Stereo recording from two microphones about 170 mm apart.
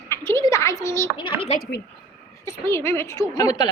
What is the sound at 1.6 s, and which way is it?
Speech, 70° left (ahead or behind).